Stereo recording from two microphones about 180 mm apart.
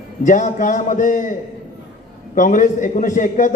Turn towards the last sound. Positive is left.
turn(degrees=45)  # may be behind; listen again after turning